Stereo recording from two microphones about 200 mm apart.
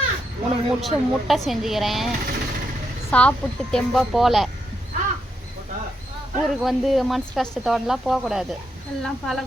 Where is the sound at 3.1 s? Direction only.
5° left (ahead or behind).